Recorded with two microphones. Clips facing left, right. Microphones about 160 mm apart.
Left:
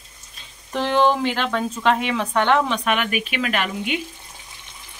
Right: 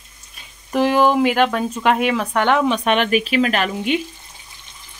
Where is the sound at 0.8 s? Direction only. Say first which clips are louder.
Right 4 dB; 10° right (ahead or behind).